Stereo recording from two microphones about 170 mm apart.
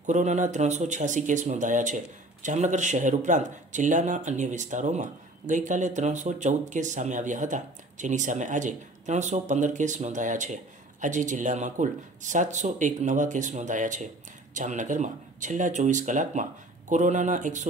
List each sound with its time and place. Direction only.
0.0 s speech: 45° right (ahead or behind)